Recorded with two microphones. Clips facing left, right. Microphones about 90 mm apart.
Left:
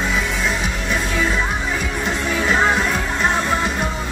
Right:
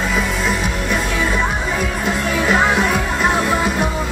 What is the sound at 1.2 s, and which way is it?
Music, 55° right (ahead or behind).